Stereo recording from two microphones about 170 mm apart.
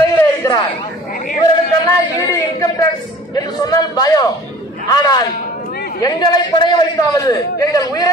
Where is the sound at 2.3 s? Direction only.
20° left (ahead or behind).